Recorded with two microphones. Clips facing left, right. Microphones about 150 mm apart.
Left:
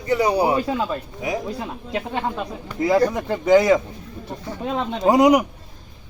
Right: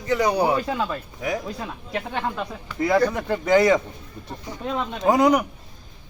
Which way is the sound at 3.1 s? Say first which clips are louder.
Left 3 dB; centre (ahead or behind).